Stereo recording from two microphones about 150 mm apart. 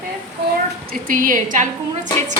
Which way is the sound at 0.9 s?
65° right (ahead or behind).